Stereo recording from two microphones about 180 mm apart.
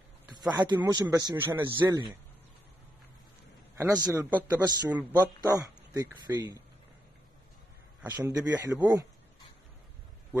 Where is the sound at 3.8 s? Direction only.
15° right (ahead or behind).